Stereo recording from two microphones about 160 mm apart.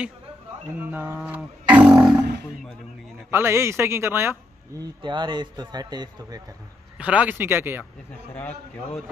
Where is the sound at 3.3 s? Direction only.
15° right (ahead or behind).